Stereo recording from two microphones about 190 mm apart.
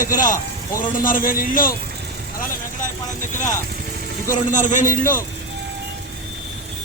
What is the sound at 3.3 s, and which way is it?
Speech, 40° left (ahead or behind).